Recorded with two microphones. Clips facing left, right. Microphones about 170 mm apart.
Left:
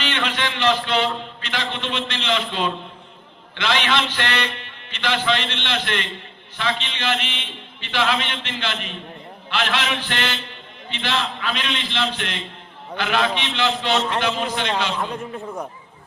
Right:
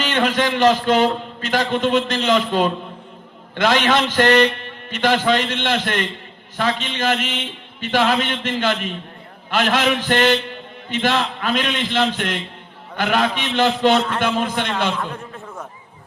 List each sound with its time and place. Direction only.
0.0 s a man's voice: 45° right (ahead or behind)